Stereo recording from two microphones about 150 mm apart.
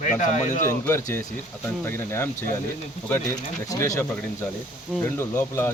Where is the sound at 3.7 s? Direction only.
20° left (ahead or behind).